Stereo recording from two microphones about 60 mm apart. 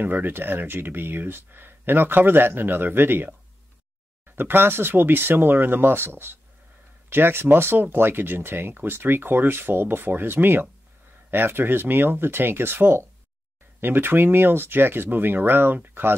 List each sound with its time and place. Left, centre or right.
0.0 s speech: right
4.4 s speech: right